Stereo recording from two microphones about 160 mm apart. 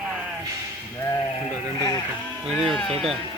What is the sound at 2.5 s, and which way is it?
Speech, centre (ahead or behind).